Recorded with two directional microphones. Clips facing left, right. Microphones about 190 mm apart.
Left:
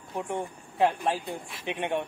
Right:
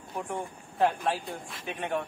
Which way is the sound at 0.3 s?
15° left (ahead or behind).